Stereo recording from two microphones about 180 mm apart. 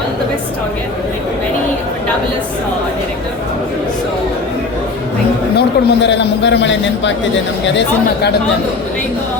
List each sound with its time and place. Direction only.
5.5 s a man's voice: 80° left